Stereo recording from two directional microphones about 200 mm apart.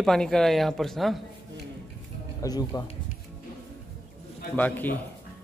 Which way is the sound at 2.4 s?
20° left (ahead or behind).